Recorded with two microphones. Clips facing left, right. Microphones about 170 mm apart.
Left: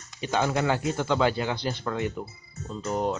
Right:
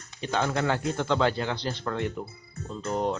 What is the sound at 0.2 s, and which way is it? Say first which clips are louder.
Speech: left 2 dB; 10° left (ahead or behind).